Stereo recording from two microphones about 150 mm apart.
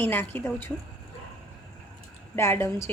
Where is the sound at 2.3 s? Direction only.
15° left (ahead or behind).